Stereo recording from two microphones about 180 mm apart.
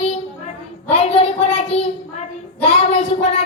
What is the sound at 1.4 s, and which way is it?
Speech, 35° left (ahead or behind).